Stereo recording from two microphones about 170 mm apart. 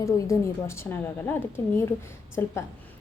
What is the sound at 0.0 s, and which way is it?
A woman's voice, 15° left (ahead or behind).